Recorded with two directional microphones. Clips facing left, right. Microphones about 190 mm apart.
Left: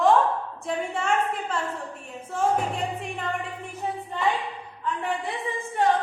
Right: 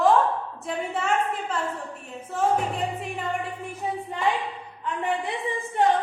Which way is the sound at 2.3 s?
Centre (ahead or behind).